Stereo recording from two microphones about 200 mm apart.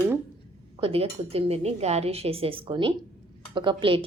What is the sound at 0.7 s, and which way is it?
A woman's voice, 30° right (ahead or behind).